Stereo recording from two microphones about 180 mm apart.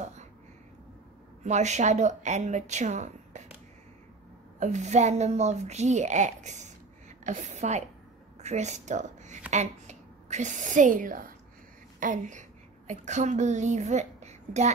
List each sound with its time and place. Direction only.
1.4 s a woman's voice: 40° right (ahead or behind)
4.6 s a woman's voice: 40° right (ahead or behind)